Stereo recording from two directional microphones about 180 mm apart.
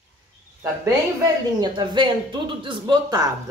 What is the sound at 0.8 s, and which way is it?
A woman's voice, 20° right (ahead or behind).